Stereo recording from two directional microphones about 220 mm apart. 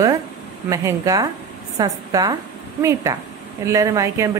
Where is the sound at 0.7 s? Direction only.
15° right (ahead or behind).